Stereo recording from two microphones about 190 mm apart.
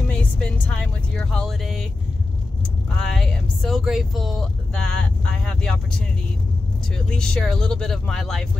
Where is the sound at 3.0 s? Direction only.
Centre (ahead or behind).